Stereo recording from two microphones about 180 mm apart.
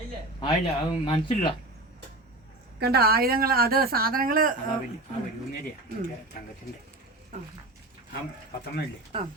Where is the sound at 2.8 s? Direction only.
60° right (ahead or behind).